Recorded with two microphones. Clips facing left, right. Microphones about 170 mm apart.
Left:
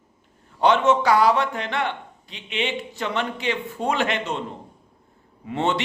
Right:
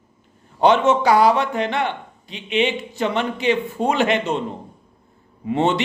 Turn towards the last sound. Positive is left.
turn(degrees=-20)  # may be behind; listen again after turning